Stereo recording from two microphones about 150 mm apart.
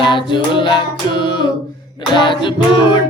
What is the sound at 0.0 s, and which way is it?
Music, 35° left (ahead or behind).